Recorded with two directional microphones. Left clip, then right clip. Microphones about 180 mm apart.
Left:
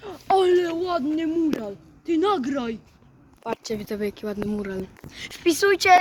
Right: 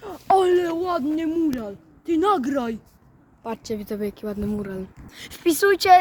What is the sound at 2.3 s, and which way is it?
Speech, 50° right (ahead or behind).